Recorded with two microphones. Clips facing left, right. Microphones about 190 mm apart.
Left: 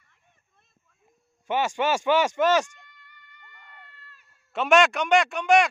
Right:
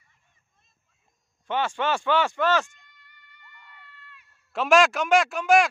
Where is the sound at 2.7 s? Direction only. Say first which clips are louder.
Left 5 dB; 55° left (ahead or behind).